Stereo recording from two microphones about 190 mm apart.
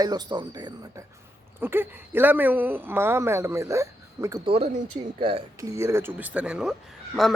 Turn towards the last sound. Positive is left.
turn(degrees=0)  # may be behind; listen again after turning